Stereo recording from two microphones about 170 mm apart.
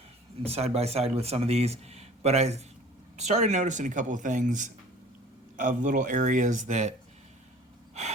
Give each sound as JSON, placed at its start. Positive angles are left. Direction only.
{"t": 0.4, "sound": "speech", "side_deg": -35}